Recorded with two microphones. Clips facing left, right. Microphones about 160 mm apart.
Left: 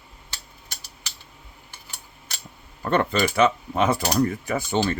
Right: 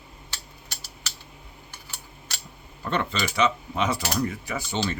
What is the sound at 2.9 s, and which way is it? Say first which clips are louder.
Speech: left 6 dB; 50° left (ahead or behind).